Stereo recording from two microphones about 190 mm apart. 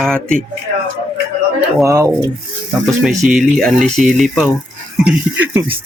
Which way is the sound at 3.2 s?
Centre (ahead or behind).